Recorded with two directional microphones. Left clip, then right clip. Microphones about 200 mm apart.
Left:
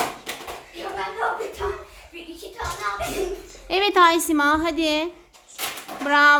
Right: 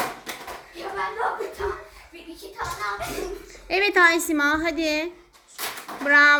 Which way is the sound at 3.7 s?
5° left (ahead or behind).